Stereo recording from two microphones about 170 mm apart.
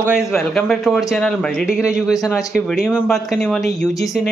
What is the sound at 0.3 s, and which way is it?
Speech, 5° left (ahead or behind).